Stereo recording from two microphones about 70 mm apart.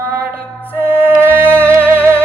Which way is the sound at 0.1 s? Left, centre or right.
Right.